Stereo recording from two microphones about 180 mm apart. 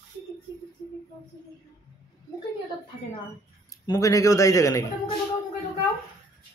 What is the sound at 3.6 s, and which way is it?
Speech, 20° left (ahead or behind).